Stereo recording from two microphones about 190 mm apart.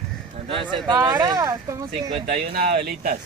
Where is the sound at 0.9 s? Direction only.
15° right (ahead or behind).